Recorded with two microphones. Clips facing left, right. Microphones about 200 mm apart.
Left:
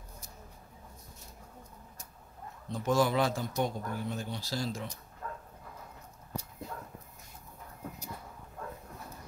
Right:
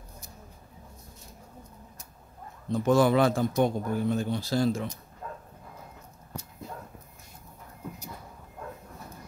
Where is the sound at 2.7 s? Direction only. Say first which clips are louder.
Right 6 dB; 55° right (ahead or behind).